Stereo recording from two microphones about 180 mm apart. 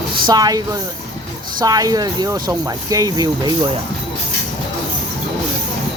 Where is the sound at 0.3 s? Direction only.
20° right (ahead or behind).